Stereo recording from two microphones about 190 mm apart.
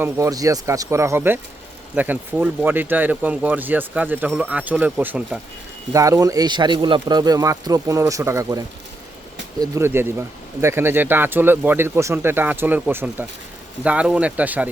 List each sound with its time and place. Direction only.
0.0 s speech: 15° right (ahead or behind)